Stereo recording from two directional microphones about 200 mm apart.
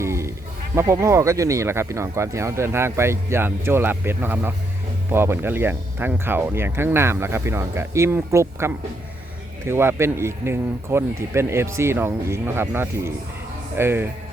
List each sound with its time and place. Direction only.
0.0 s music: 15° right (ahead or behind)
0.8 s speech: 15° right (ahead or behind)